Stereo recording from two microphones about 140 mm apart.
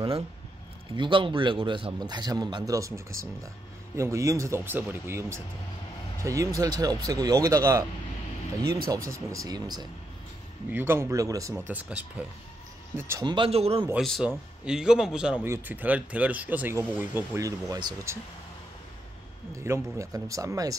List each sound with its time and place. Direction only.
0.9 s a man's voice: 35° right (ahead or behind)
9.1 s speech: 25° right (ahead or behind)
10.7 s speech: 15° right (ahead or behind)
11.7 s speech: 10° right (ahead or behind)
13.2 s a man's voice: 35° right (ahead or behind)
13.9 s a man's voice: centre (ahead or behind)
15.4 s speech: 15° right (ahead or behind)
19.5 s speech: 20° right (ahead or behind)